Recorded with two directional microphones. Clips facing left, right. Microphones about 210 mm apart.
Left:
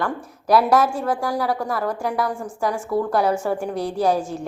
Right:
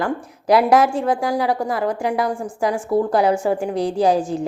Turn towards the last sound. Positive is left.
turn(degrees=-15)  # may be behind; listen again after turning